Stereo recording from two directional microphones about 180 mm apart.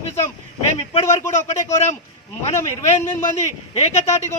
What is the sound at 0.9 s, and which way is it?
Speech, 40° left (ahead or behind).